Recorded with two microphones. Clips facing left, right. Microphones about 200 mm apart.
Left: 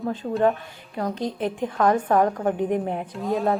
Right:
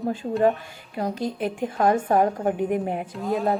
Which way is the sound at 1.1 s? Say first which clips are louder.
Left 1 dB; 5° right (ahead or behind).